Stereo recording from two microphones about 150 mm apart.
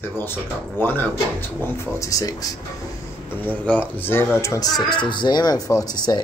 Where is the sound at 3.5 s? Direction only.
10° left (ahead or behind).